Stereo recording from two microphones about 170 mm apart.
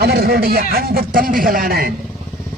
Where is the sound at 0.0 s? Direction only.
65° right (ahead or behind).